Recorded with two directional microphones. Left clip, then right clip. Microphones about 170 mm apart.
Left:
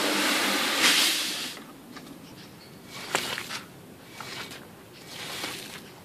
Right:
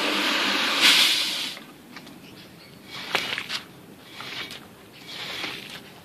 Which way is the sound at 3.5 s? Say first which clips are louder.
Right 5 dB; 45° right (ahead or behind).